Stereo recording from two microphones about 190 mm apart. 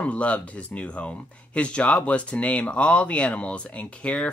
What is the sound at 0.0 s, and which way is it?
Speech, 5° left (ahead or behind).